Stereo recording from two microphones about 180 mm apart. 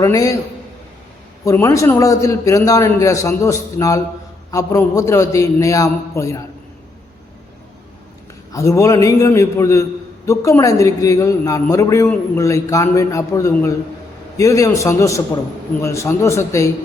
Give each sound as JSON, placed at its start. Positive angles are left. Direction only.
{"t": 0.0, "sound": "a man's voice", "side_deg": 20}
{"t": 1.5, "sound": "a man's voice", "side_deg": 15}
{"t": 8.5, "sound": "a man's voice", "side_deg": 15}